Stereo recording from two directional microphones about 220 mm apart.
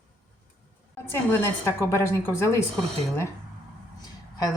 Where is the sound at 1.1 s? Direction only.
10° left (ahead or behind).